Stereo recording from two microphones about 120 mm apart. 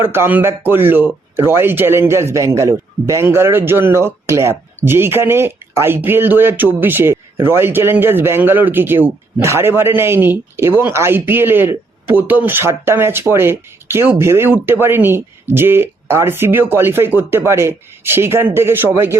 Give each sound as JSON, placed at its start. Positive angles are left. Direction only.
{"t": 0.0, "sound": "speech", "side_deg": -20}